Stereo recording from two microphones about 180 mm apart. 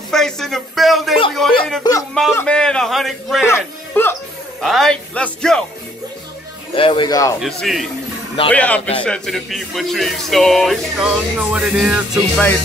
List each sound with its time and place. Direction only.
0.1 s speech: centre (ahead or behind)
1.8 s speech: 20° left (ahead or behind)
2.3 s speech: 5° left (ahead or behind)
3.4 s speech: 15° left (ahead or behind)
4.6 s speech: centre (ahead or behind)
6.7 s speech: 30° left (ahead or behind)
7.3 s a man's voice: centre (ahead or behind)